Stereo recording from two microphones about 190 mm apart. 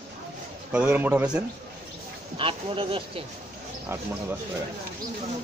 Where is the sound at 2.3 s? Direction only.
30° right (ahead or behind).